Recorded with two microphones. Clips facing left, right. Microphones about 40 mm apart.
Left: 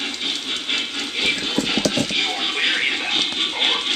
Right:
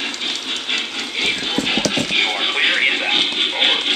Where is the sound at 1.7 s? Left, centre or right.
Right.